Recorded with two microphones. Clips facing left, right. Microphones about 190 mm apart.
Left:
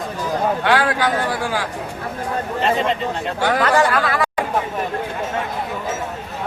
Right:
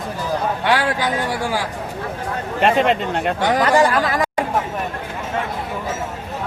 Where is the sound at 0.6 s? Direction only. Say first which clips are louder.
Even; 10° right (ahead or behind).